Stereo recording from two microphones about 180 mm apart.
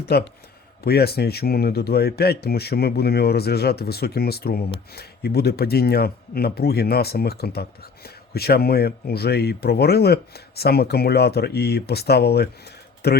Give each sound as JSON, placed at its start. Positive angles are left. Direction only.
{"t": 0.0, "sound": "speech", "side_deg": 60}